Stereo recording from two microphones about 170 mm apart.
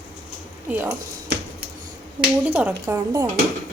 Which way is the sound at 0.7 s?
10° right (ahead or behind).